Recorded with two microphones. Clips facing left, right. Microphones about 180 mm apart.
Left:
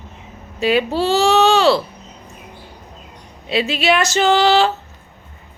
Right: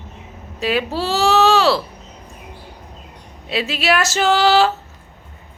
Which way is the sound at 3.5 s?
Centre (ahead or behind).